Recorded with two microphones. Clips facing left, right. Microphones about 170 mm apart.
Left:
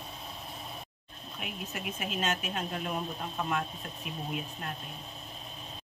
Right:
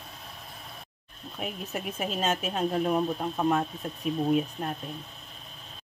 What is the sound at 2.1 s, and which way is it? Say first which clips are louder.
Speech: right 4 dB; 35° right (ahead or behind).